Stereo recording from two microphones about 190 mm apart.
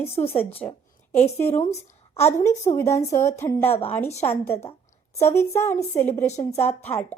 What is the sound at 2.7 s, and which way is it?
Speech, 15° left (ahead or behind).